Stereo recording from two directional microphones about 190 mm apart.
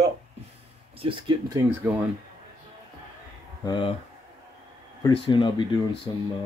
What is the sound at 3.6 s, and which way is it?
Speech, 25° left (ahead or behind).